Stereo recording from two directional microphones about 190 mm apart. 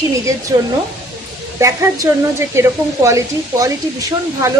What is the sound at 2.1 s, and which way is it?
Speech, 10° right (ahead or behind).